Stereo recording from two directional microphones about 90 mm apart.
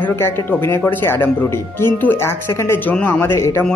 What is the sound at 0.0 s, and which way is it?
Speech, 25° left (ahead or behind).